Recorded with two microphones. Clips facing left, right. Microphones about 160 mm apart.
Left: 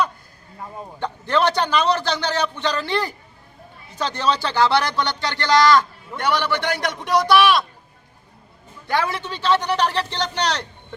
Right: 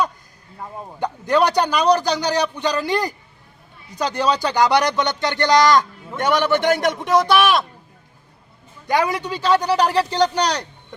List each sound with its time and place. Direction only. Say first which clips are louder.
0.9 s speech: right 3 dB; 10° right (ahead or behind)
8.9 s speech: right 3 dB; 15° right (ahead or behind)